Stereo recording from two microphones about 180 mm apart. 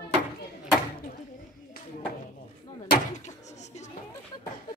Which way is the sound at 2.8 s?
45° left (ahead or behind).